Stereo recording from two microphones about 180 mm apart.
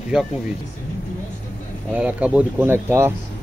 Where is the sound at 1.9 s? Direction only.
10° right (ahead or behind).